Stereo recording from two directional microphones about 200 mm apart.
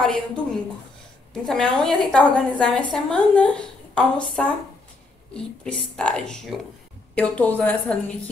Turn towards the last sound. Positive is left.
turn(degrees=10)  # may be behind; listen again after turning